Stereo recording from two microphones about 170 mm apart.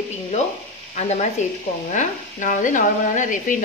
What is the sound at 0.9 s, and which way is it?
Speech, 40° left (ahead or behind).